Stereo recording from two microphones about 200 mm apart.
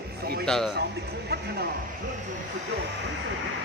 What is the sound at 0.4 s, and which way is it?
Speech, centre (ahead or behind).